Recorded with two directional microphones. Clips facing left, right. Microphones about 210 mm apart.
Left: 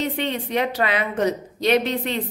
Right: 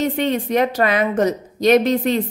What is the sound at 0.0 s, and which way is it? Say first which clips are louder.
A woman's voice: right 6 dB; 45° right (ahead or behind).